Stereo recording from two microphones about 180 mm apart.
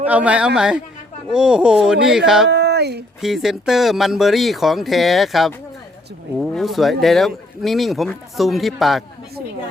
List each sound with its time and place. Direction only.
0.0 s speech: 10° right (ahead or behind)
2.5 s a sound: 70° right (ahead or behind)
3.2 s speech: centre (ahead or behind)